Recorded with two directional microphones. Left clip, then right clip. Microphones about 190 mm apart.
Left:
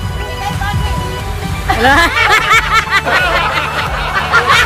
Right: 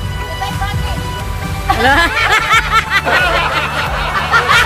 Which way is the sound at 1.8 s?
Centre (ahead or behind).